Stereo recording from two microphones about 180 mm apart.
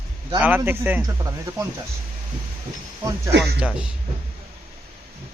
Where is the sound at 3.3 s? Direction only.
75° right (ahead or behind).